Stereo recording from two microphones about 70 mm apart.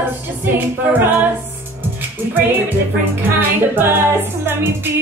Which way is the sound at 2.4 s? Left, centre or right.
Right.